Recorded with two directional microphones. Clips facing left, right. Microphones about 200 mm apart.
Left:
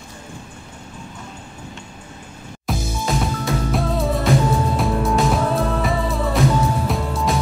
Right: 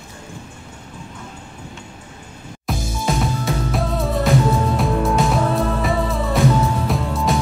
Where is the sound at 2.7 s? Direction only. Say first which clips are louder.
Even; centre (ahead or behind).